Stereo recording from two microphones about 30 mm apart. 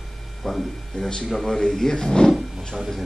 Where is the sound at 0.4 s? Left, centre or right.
Centre.